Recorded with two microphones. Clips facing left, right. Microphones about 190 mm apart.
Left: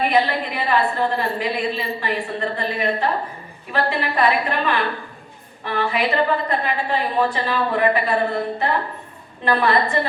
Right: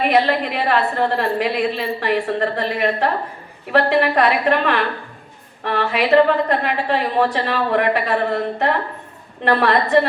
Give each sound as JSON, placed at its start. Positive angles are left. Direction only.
{"t": 0.0, "sound": "a woman's voice", "side_deg": -70}